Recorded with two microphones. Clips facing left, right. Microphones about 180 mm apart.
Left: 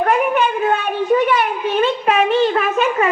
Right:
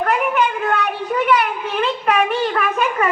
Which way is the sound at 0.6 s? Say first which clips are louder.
Left 3 dB; 25° left (ahead or behind).